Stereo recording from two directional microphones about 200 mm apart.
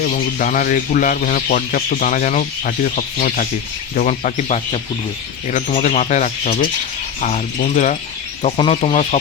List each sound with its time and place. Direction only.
0.0 s speech: 45° left (ahead or behind)